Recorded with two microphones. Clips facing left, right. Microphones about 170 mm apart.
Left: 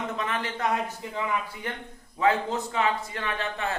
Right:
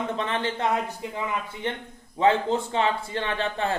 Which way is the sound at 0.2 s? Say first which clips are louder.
Right 1 dB; 30° right (ahead or behind).